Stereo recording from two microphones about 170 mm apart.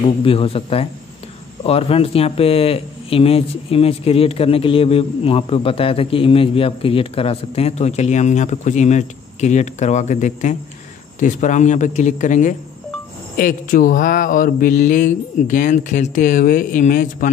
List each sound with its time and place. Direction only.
0.2 s speech: 35° left (ahead or behind)
11.1 s mantra: 45° left (ahead or behind)